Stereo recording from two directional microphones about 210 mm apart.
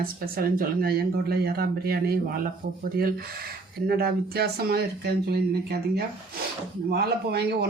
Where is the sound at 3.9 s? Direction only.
45° right (ahead or behind).